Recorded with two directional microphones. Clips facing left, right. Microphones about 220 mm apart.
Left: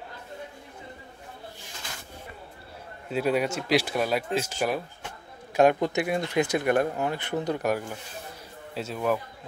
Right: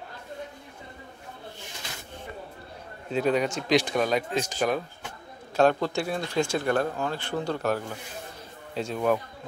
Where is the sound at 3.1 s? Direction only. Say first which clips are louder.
Right 1 dB; 5° left (ahead or behind).